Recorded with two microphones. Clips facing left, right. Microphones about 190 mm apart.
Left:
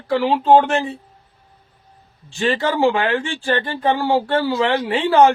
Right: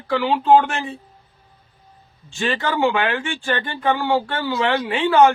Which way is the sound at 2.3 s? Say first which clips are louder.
Left 3 dB; 35° left (ahead or behind).